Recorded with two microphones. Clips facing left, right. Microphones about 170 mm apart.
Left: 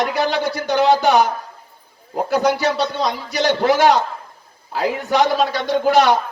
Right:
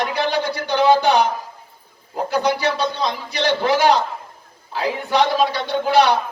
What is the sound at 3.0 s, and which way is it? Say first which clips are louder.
A man's voice: left 2 dB; 45° left (ahead or behind).